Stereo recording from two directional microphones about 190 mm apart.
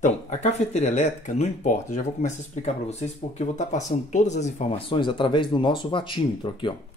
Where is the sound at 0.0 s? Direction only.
40° left (ahead or behind).